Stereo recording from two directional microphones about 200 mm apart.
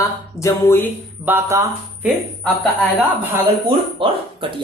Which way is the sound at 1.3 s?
10° right (ahead or behind).